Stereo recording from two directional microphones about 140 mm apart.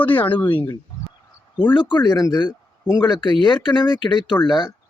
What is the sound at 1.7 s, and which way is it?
Speech, 35° left (ahead or behind).